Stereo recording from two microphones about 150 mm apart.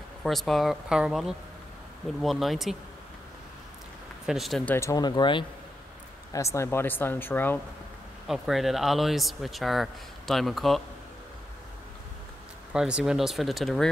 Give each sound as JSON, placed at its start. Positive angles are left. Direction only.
{"t": 0.2, "sound": "speech", "side_deg": 0}
{"t": 4.3, "sound": "speech", "side_deg": 0}
{"t": 4.6, "sound": "speech", "side_deg": 15}
{"t": 6.3, "sound": "speech", "side_deg": 20}
{"t": 8.3, "sound": "speech", "side_deg": 0}
{"t": 12.7, "sound": "speech", "side_deg": -5}